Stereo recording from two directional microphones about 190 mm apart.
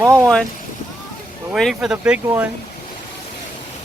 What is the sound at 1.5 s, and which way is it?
Speech, centre (ahead or behind).